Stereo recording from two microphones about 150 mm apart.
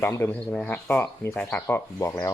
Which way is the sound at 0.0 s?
15° left (ahead or behind).